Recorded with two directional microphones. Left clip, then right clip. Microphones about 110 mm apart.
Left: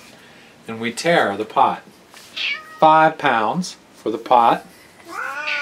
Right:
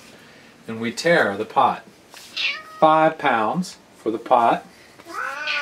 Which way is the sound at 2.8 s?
45° left (ahead or behind).